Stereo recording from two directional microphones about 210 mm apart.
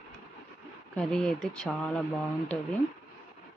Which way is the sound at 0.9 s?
5° left (ahead or behind).